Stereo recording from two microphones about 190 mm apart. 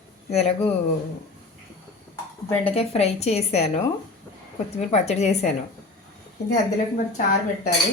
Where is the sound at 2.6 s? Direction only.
30° left (ahead or behind).